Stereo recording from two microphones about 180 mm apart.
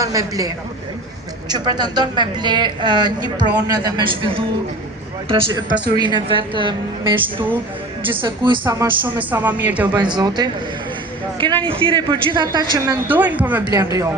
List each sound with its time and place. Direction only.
0.0 s a woman's voice: 20° right (ahead or behind)
8.6 s speech: 15° right (ahead or behind)
9.9 s a woman's voice: 25° right (ahead or behind)
13.1 s speech: 10° right (ahead or behind)